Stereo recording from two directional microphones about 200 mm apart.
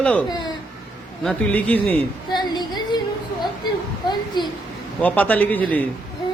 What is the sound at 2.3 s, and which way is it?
Female singing, 20° left (ahead or behind).